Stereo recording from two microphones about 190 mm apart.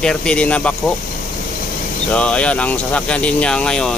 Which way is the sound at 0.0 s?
5° left (ahead or behind).